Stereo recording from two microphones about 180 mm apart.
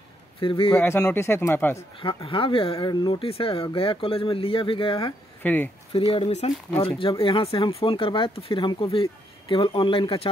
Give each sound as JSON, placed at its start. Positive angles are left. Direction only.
{"t": 0.4, "sound": "speech", "side_deg": 30}
{"t": 0.7, "sound": "speech", "side_deg": 10}
{"t": 2.0, "sound": "speech", "side_deg": 30}
{"t": 5.4, "sound": "speech", "side_deg": 10}
{"t": 5.9, "sound": "speech", "side_deg": 30}